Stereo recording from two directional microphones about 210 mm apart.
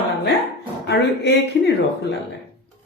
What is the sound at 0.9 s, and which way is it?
Speech, 55° left (ahead or behind).